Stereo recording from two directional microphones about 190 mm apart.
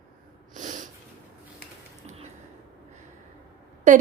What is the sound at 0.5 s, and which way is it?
Snort, 40° right (ahead or behind).